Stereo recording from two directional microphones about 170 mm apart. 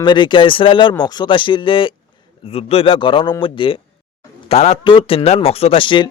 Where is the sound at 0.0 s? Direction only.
25° left (ahead or behind).